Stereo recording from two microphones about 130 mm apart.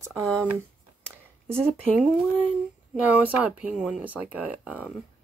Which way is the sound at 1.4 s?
20° right (ahead or behind).